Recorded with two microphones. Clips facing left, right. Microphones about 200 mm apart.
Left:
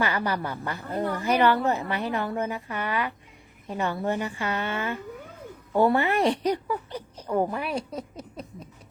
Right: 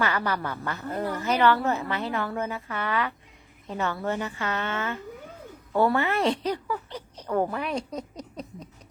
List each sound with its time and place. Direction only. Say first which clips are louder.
0.0 s a woman's voice: even; 15° left (ahead or behind)